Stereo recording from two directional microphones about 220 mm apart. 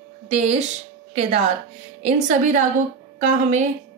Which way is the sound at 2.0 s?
35° right (ahead or behind).